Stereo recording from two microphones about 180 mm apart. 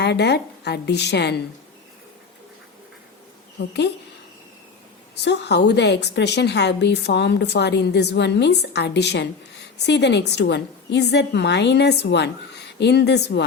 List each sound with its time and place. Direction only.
0.0 s a woman's voice: 70° left (ahead or behind)
3.6 s a woman's voice: 65° left (ahead or behind)
5.2 s a woman's voice: 70° left (ahead or behind)